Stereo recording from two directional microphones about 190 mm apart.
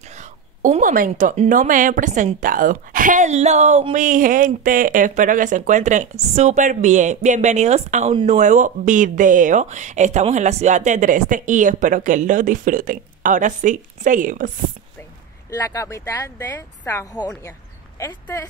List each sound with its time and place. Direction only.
0.2 s a woman's voice: 40° right (ahead or behind)
15.5 s speech: 15° left (ahead or behind)